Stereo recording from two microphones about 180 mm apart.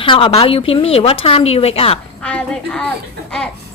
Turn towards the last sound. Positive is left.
turn(degrees=5)  # may be behind; listen again after turning